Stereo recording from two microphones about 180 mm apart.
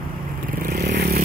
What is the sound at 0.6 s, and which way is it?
Vehicle, 60° right (ahead or behind).